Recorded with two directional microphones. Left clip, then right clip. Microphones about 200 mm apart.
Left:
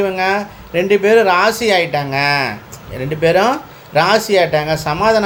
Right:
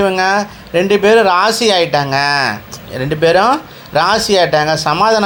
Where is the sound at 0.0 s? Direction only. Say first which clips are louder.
Right 3 dB; 15° right (ahead or behind).